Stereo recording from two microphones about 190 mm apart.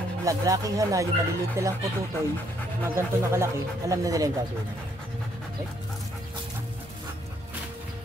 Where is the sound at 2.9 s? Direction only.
15° right (ahead or behind).